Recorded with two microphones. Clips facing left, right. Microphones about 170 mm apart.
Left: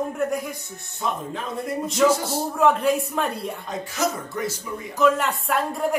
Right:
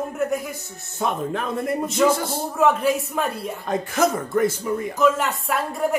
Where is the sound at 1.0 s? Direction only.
60° right (ahead or behind).